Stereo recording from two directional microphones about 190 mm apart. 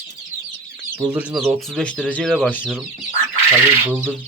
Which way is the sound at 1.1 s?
5° right (ahead or behind).